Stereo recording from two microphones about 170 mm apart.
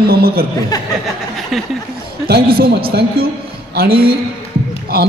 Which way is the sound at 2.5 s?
65° right (ahead or behind).